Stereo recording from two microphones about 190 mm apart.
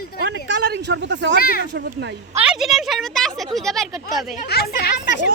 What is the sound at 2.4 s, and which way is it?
Speech, 5° right (ahead or behind).